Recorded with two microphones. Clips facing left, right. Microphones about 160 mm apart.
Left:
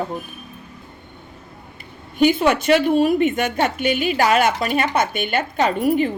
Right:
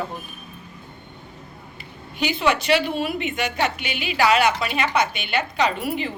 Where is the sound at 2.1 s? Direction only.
50° left (ahead or behind).